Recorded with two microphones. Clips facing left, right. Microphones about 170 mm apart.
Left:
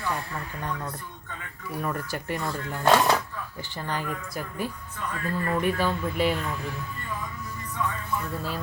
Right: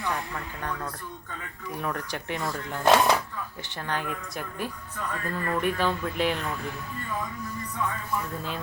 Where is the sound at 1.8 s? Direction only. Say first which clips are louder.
Left 1 dB; 5° left (ahead or behind).